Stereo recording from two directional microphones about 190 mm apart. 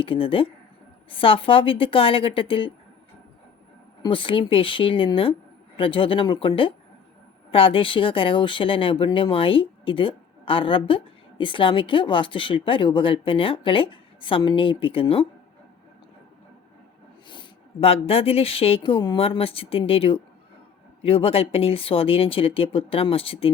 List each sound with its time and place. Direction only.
0.0 s speech: 30° left (ahead or behind)
4.0 s speech: 25° left (ahead or behind)
17.2 s speech: 25° left (ahead or behind)